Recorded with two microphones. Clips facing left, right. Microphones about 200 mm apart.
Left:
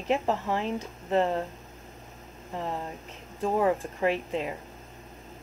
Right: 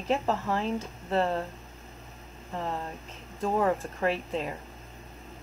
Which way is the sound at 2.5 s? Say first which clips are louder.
Even; 15° left (ahead or behind).